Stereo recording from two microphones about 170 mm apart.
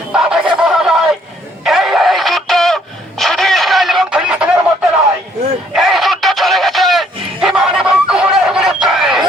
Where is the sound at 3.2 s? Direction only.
Centre (ahead or behind).